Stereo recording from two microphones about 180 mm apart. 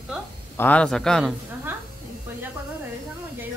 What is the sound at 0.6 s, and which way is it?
Speech, 10° left (ahead or behind).